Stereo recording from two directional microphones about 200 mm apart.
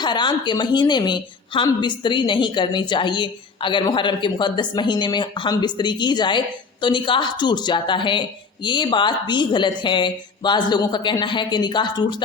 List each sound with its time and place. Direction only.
0.0 s a woman's voice: 20° left (ahead or behind)